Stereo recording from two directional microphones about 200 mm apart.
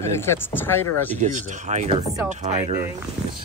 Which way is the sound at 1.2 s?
35° right (ahead or behind).